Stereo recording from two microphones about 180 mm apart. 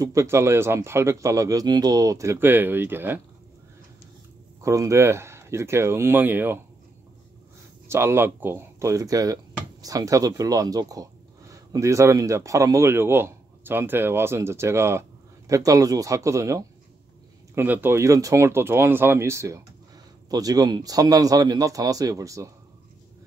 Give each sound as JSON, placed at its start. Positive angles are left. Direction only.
{"t": 0.0, "sound": "speech", "side_deg": -15}
{"t": 4.6, "sound": "speech", "side_deg": -15}
{"t": 7.9, "sound": "speech", "side_deg": -15}